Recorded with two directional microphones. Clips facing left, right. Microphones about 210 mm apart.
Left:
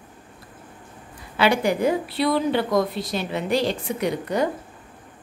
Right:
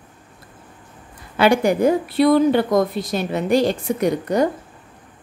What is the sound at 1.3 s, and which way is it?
Speech, 45° right (ahead or behind).